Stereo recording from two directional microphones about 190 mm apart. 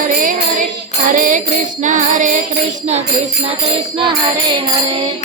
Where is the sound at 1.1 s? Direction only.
45° right (ahead or behind).